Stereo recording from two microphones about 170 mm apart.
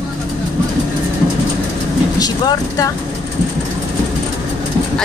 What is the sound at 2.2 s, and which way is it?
Speech, 20° left (ahead or behind).